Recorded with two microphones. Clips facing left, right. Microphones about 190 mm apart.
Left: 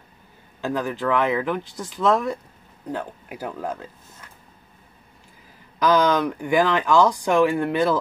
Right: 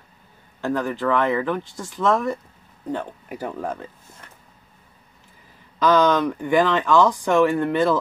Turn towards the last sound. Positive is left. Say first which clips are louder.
# right 1 dB
turn(degrees=15)  # may be behind; listen again after turning